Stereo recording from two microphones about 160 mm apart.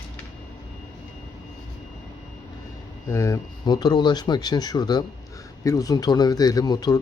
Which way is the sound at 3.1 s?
20° left (ahead or behind).